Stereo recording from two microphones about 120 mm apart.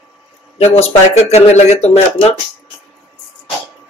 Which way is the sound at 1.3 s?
65° left (ahead or behind).